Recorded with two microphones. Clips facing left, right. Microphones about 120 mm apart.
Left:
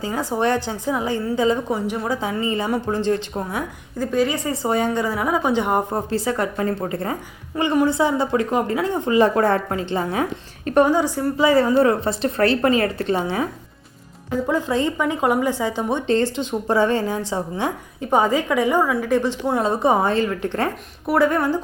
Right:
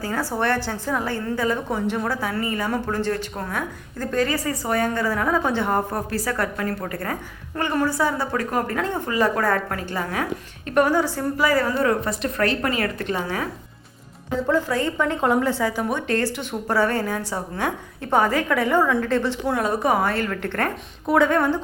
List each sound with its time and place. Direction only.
0.0 s a woman's voice: 20° left (ahead or behind)
4.4 s a woman's voice: 25° left (ahead or behind)
9.0 s a woman's voice: 25° left (ahead or behind)
21.1 s speech: 5° left (ahead or behind)